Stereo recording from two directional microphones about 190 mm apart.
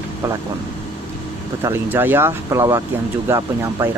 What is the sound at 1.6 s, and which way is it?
Speech, 10° right (ahead or behind).